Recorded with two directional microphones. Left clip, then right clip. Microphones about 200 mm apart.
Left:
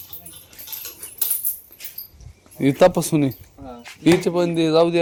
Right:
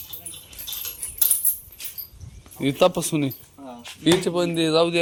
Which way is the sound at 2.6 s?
45° left (ahead or behind).